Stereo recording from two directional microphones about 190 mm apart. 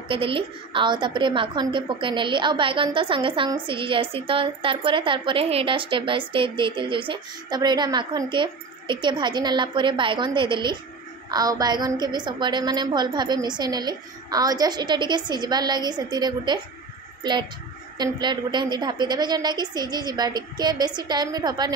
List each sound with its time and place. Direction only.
0.1 s a woman's voice: 25° right (ahead or behind)